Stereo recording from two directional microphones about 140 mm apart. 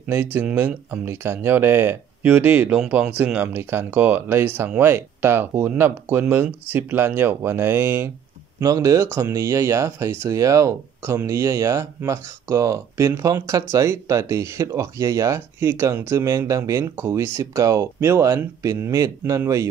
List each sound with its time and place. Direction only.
0.1 s speech: 15° right (ahead or behind)